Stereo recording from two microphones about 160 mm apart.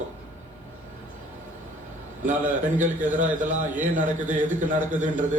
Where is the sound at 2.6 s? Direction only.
50° right (ahead or behind).